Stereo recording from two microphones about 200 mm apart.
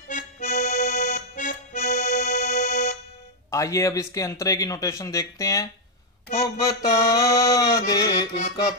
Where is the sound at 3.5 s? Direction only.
15° left (ahead or behind).